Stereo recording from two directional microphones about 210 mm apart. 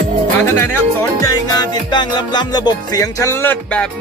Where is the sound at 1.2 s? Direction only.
20° left (ahead or behind).